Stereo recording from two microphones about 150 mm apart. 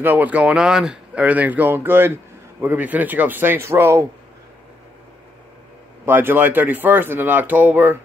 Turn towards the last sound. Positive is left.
turn(degrees=-10)  # may be behind; listen again after turning